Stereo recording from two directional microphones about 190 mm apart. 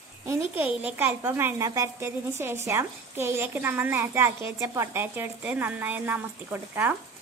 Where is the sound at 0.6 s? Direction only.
10° right (ahead or behind).